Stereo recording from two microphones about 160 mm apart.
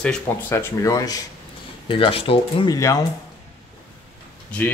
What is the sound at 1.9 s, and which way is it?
Speech, 35° left (ahead or behind).